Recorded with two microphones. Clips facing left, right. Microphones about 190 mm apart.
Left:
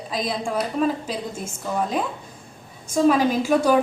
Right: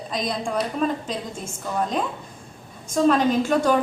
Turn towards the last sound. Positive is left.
turn(degrees=5)  # may be behind; listen again after turning